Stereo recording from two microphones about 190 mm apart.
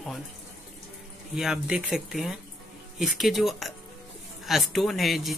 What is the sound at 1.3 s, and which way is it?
Speech, 5° right (ahead or behind).